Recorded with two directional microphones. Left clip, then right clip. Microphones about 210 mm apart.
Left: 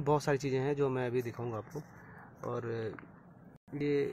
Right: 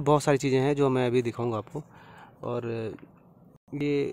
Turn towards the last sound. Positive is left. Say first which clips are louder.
# right 4 dB
turn(degrees=-15)  # may be behind; listen again after turning